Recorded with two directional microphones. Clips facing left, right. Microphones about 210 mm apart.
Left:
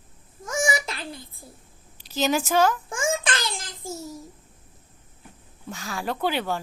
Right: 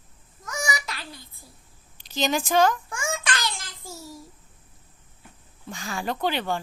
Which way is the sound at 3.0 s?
25° left (ahead or behind).